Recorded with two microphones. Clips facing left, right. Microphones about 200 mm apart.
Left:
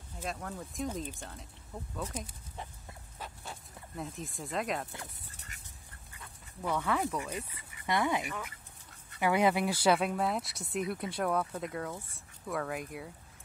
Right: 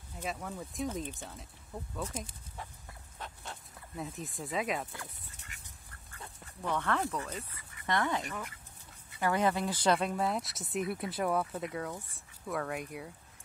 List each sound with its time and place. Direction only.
0.2 s speech: centre (ahead or behind)
2.5 s chicken: 20° left (ahead or behind)
3.2 s dog: centre (ahead or behind)
5.5 s duck: 40° left (ahead or behind)
6.6 s speech: 10° left (ahead or behind)